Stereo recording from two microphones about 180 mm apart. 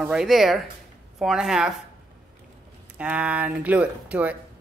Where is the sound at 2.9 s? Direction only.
5° right (ahead or behind).